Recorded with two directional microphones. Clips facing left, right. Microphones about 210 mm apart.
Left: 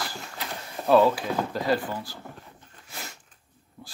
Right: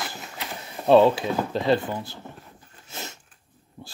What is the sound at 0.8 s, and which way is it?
Speech, 25° right (ahead or behind).